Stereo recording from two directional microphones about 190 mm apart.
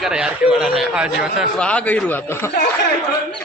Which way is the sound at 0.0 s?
5° right (ahead or behind).